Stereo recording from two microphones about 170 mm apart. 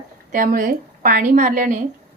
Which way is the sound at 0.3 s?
55° right (ahead or behind).